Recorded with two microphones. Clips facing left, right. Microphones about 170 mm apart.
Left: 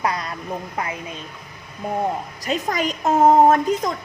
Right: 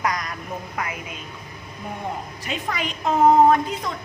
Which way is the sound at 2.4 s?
40° left (ahead or behind).